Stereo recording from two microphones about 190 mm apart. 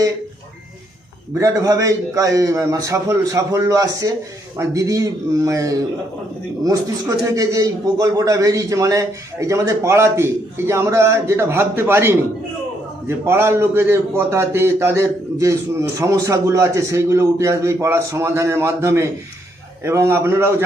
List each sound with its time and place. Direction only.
1.4 s a man's voice: 15° right (ahead or behind)